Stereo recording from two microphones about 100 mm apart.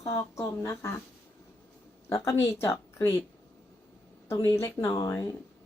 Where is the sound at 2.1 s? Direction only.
30° left (ahead or behind).